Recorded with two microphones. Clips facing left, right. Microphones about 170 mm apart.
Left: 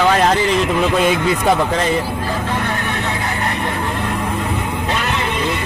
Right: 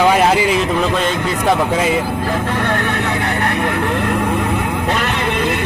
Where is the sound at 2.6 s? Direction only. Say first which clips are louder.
Right 3 dB; 60° right (ahead or behind).